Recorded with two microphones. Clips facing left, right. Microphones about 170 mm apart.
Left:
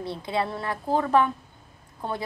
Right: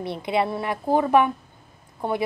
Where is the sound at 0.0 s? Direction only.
15° right (ahead or behind).